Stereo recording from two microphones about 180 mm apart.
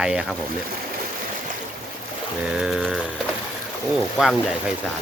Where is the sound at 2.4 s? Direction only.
5° right (ahead or behind).